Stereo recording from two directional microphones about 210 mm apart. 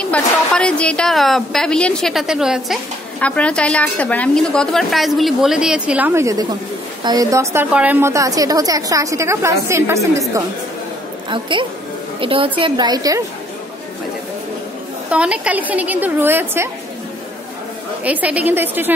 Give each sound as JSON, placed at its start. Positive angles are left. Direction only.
{"t": 0.0, "sound": "a woman's voice", "side_deg": 5}
{"t": 11.2, "sound": "a woman's voice", "side_deg": -25}
{"t": 15.0, "sound": "a woman's voice", "side_deg": -5}
{"t": 18.0, "sound": "a woman's voice", "side_deg": -5}